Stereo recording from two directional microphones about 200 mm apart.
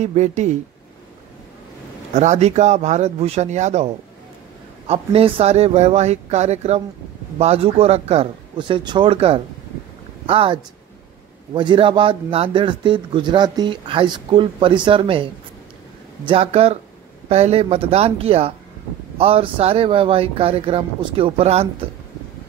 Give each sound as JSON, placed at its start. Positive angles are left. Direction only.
{"t": 0.0, "sound": "speech", "side_deg": -35}
{"t": 2.1, "sound": "a man's voice", "side_deg": -35}
{"t": 16.3, "sound": "a man's voice", "side_deg": -30}